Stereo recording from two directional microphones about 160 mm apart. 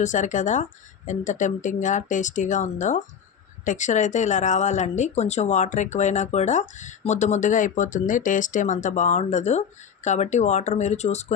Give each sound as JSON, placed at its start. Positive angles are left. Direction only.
{"t": 0.0, "sound": "speech", "side_deg": 50}